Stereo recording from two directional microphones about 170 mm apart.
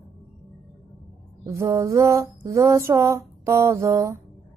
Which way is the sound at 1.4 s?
15° right (ahead or behind).